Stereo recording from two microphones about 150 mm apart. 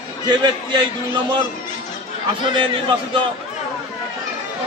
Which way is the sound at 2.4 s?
35° right (ahead or behind).